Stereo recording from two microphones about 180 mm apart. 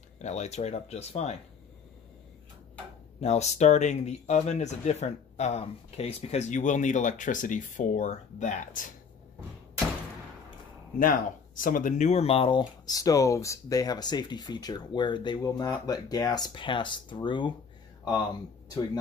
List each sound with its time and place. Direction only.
0.2 s speech: 40° left (ahead or behind)
3.2 s speech: 40° left (ahead or behind)
11.0 s speech: 50° left (ahead or behind); by 17.6 s 25° left (ahead or behind)